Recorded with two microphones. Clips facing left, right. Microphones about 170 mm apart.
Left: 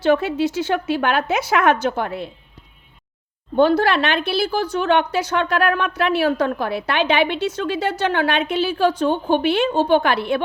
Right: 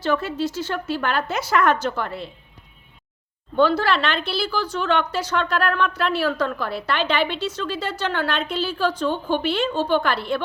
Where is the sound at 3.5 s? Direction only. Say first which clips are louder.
Left 3 dB; 55° left (ahead or behind).